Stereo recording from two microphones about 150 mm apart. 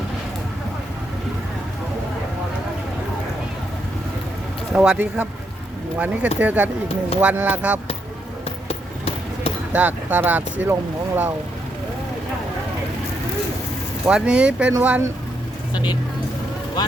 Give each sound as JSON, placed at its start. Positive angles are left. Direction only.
{"t": 4.7, "sound": "speech", "side_deg": -5}
{"t": 8.4, "sound": "a sound", "side_deg": 40}
{"t": 9.7, "sound": "speech", "side_deg": -10}
{"t": 14.0, "sound": "speech", "side_deg": -5}
{"t": 16.8, "sound": "speech", "side_deg": 25}